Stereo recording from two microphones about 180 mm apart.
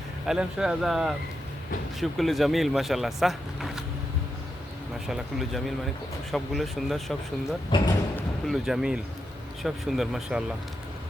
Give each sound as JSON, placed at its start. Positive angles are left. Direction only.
{"t": 0.3, "sound": "speech", "side_deg": -5}
{"t": 5.0, "sound": "speech", "side_deg": 0}
{"t": 7.7, "sound": "speech", "side_deg": 25}
{"t": 8.4, "sound": "speech", "side_deg": 0}